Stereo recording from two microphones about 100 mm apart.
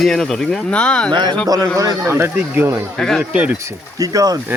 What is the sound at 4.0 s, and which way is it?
Speech, 35° right (ahead or behind).